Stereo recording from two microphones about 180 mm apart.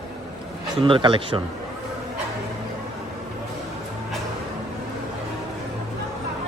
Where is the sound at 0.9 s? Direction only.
30° right (ahead or behind).